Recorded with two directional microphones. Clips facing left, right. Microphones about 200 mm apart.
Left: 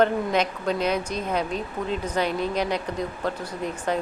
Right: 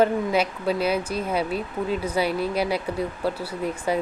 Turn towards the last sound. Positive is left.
turn(degrees=-10)  # may be behind; listen again after turning